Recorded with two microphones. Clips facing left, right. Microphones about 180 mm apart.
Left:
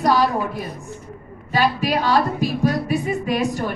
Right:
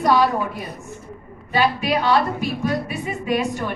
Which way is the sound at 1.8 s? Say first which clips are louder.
Even; 35° left (ahead or behind).